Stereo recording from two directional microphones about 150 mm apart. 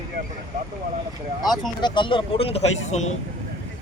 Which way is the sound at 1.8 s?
30° left (ahead or behind).